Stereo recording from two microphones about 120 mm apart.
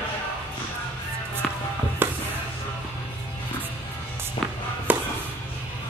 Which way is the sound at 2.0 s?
15° right (ahead or behind).